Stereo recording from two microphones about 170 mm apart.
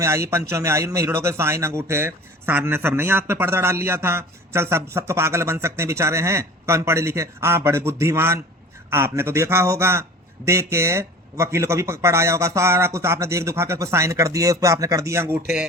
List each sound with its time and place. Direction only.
0.0 s a man's voice: 15° right (ahead or behind)